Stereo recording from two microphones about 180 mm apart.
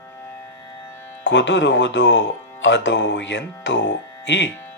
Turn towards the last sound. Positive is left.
turn(degrees=80)